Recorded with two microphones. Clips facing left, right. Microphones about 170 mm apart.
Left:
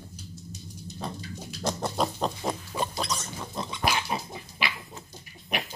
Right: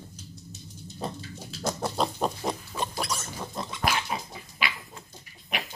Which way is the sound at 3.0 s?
5° right (ahead or behind).